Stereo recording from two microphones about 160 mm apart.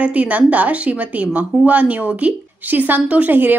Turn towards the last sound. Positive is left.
turn(degrees=-10)  # may be behind; listen again after turning